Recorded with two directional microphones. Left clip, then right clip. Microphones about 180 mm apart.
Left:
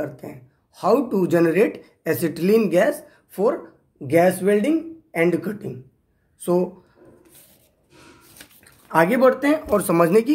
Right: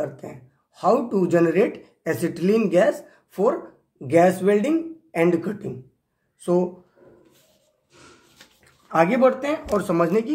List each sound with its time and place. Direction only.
0.0 s speech: 15° left (ahead or behind)
6.4 s speech: 30° left (ahead or behind)
8.9 s speech: 30° left (ahead or behind)